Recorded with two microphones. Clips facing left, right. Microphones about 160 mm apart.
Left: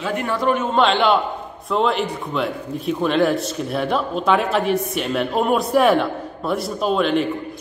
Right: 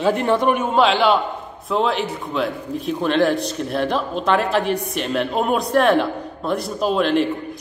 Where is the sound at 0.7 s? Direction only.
5° right (ahead or behind).